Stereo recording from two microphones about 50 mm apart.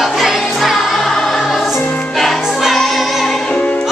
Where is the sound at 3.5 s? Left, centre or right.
Left.